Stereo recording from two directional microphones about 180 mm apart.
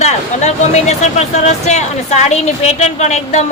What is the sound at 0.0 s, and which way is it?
Speech, 40° left (ahead or behind).